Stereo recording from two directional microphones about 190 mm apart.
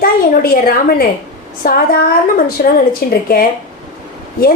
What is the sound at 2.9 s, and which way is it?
Speech, 50° left (ahead or behind).